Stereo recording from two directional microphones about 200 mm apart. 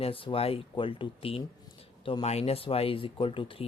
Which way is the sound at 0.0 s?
25° left (ahead or behind).